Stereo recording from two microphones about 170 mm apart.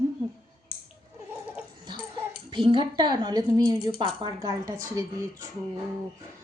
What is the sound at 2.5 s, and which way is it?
Speech, 30° right (ahead or behind).